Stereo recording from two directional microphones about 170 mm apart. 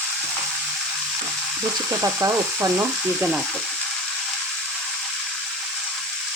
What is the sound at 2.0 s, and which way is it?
Speech, 15° right (ahead or behind).